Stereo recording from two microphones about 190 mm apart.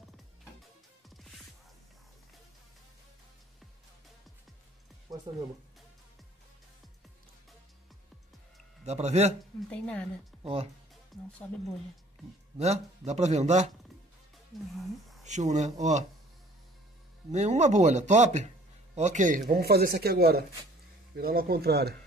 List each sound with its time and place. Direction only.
1.1 s music: centre (ahead or behind)
5.1 s music: 20° right (ahead or behind)
8.8 s speech: 35° right (ahead or behind)
9.7 s a woman's voice: 5° left (ahead or behind)
10.4 s speech: 30° right (ahead or behind)
11.1 s speech: centre (ahead or behind)
12.5 s speech: 35° right (ahead or behind)
14.5 s a woman's voice: centre (ahead or behind)
15.2 s speech: 40° right (ahead or behind)
17.3 s speech: 35° right (ahead or behind)
19.5 s speech: 55° right (ahead or behind)